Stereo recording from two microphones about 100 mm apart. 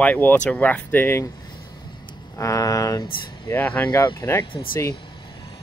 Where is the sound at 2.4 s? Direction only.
35° left (ahead or behind).